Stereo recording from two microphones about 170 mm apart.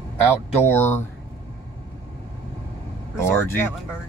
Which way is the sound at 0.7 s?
15° left (ahead or behind).